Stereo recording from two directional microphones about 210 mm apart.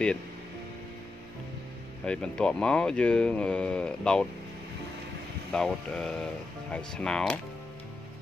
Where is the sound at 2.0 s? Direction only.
5° left (ahead or behind).